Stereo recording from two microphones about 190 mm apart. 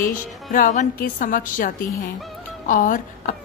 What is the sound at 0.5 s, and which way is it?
A woman's voice, 40° left (ahead or behind).